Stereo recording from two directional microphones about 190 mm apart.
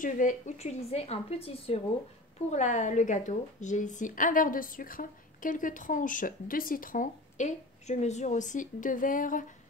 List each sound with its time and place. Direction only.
0.0 s speech: 40° left (ahead or behind)